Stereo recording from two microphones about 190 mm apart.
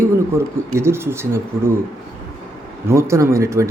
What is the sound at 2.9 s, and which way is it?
Speech, 15° right (ahead or behind).